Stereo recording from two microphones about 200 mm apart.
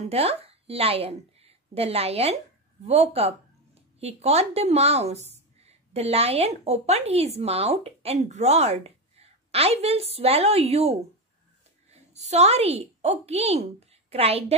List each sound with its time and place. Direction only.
0.0 s a woman's voice: 30° right (ahead or behind)